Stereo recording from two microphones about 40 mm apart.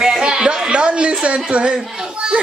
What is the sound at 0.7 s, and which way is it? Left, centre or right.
A woman's voice, right.